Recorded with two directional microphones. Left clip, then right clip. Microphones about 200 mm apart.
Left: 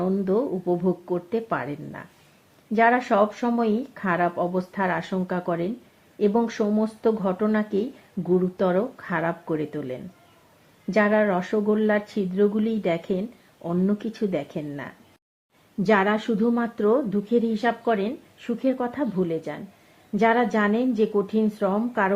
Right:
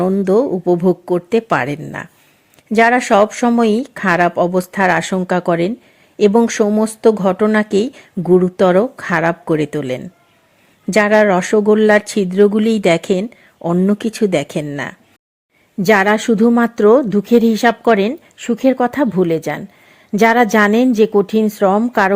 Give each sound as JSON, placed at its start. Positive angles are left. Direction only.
{"t": 0.0, "sound": "a woman's voice", "side_deg": -35}